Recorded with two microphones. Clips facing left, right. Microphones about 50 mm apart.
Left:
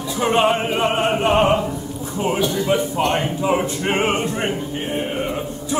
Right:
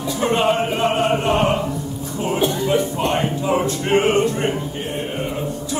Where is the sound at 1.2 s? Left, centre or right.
Centre.